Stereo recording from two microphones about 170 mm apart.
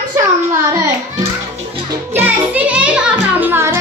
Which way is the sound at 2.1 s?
10° right (ahead or behind).